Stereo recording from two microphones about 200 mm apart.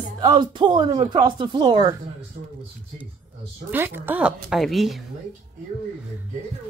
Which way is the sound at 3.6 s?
10° right (ahead or behind).